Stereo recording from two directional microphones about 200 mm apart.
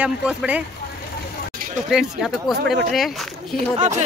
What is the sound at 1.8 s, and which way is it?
Speech, centre (ahead or behind).